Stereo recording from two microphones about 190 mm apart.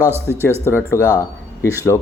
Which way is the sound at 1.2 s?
15° left (ahead or behind).